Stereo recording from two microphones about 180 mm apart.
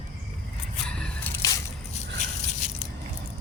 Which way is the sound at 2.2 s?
45° left (ahead or behind).